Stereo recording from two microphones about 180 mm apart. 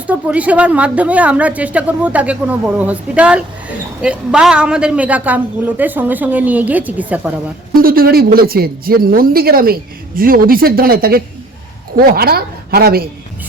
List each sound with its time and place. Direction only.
0.1 s a man's voice: 10° right (ahead or behind)
7.8 s speech: 55° right (ahead or behind)